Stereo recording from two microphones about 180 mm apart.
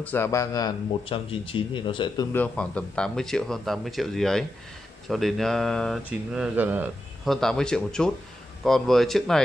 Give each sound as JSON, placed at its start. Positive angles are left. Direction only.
{"t": 0.0, "sound": "speech", "side_deg": 10}
{"t": 2.3, "sound": "speech", "side_deg": 5}
{"t": 7.2, "sound": "speech", "side_deg": 0}